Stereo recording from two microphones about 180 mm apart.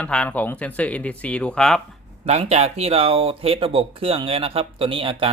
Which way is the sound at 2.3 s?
35° right (ahead or behind).